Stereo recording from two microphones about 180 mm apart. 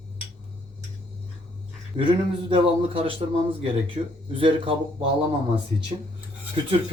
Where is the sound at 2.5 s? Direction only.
30° right (ahead or behind).